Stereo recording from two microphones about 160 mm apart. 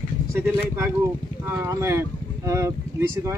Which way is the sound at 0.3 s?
15° right (ahead or behind).